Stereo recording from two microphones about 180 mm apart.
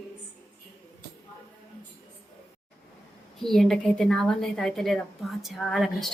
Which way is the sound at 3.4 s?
Centre (ahead or behind).